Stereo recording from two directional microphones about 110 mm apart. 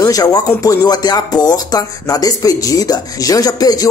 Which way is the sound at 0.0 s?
35° left (ahead or behind).